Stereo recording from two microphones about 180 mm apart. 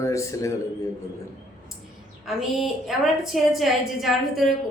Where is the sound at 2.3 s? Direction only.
Centre (ahead or behind).